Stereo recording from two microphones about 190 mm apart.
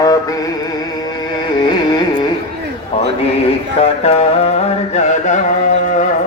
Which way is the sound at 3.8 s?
35° left (ahead or behind).